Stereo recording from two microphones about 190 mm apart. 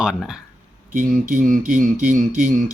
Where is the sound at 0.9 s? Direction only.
45° right (ahead or behind).